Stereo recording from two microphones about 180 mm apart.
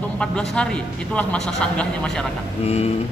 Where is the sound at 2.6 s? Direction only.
35° left (ahead or behind).